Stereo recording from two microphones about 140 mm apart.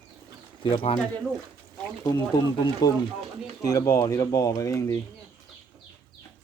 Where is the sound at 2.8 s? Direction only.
30° left (ahead or behind).